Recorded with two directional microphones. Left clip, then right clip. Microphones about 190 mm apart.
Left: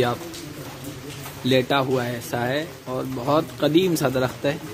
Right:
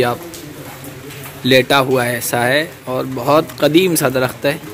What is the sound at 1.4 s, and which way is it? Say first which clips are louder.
Speech: right 8 dB; 20° right (ahead or behind).